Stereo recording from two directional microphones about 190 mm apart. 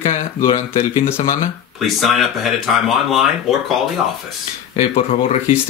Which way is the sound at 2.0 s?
Centre (ahead or behind).